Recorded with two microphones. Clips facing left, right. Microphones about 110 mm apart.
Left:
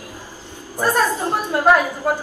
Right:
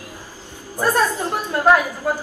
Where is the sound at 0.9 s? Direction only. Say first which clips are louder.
Left 1 dB; 20° left (ahead or behind).